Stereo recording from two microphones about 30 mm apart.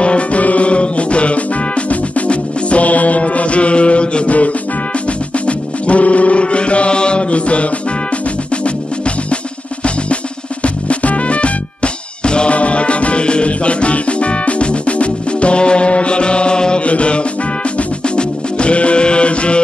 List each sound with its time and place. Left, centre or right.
0.0 s music: left
0.4 s music: left
4.3 s music: left
10.6 s music: left
12.4 s music: left
16.8 s music: left